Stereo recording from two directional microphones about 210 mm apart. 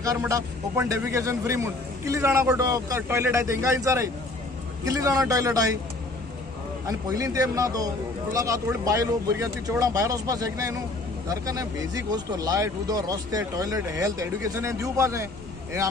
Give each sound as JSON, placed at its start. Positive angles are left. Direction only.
{"t": 0.0, "sound": "a man's voice", "side_deg": -15}
{"t": 6.9, "sound": "a man's voice", "side_deg": -15}